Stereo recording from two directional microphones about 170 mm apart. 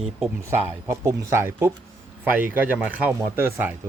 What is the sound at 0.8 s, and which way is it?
Speech, 15° right (ahead or behind).